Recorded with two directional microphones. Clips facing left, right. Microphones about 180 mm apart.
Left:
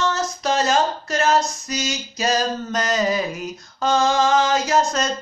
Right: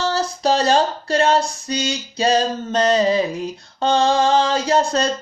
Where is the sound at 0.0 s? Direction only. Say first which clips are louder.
Right 3 dB; 30° right (ahead or behind).